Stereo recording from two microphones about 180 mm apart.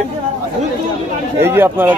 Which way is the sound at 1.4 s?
10° right (ahead or behind).